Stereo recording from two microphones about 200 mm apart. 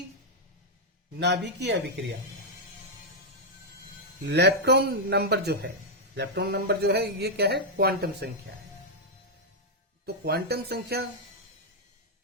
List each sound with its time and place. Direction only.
1.2 s speech: 60° right (ahead or behind)
4.3 s speech: 55° right (ahead or behind)
10.1 s speech: 55° right (ahead or behind)